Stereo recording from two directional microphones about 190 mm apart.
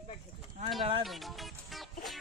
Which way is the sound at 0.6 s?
40° right (ahead or behind).